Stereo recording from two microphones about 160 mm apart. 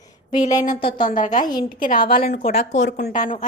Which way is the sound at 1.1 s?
50° left (ahead or behind).